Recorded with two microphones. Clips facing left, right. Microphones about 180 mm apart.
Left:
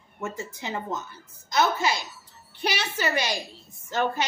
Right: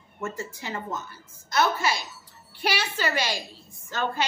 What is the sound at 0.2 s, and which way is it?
A woman's voice, 20° left (ahead or behind).